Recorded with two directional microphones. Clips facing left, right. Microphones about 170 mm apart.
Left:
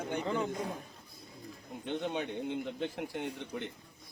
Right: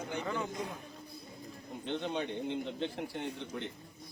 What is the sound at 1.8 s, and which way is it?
A man's voice, 10° left (ahead or behind).